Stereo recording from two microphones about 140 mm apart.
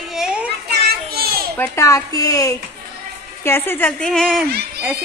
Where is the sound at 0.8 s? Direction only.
90° right.